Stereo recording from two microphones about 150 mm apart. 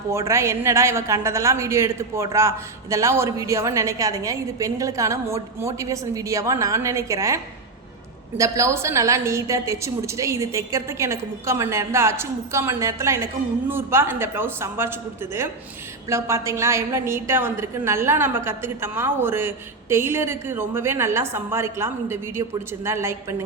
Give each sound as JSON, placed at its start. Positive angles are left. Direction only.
{"t": 0.1, "sound": "a woman's voice", "side_deg": -20}